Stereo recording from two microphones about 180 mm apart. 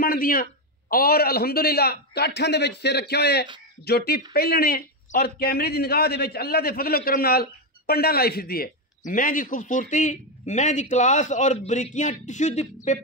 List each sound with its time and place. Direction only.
0.0 s a man's voice: 55° left (ahead or behind)